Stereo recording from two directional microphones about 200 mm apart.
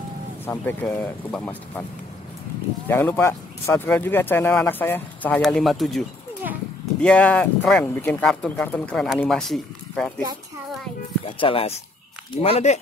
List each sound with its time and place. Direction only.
0.5 s speech: 10° left (ahead or behind)
2.9 s speech: 10° left (ahead or behind)
11.2 s speech: 25° left (ahead or behind)